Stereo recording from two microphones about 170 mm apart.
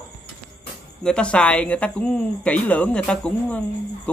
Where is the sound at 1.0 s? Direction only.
5° left (ahead or behind).